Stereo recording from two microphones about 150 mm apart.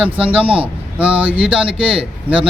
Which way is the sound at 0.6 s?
10° right (ahead or behind).